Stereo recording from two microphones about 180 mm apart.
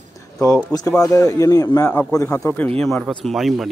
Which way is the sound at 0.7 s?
20° left (ahead or behind).